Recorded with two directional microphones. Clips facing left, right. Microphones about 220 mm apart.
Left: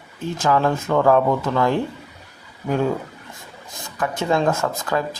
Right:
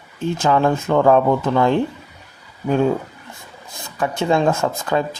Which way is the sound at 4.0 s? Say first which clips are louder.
Right 2 dB; 25° right (ahead or behind).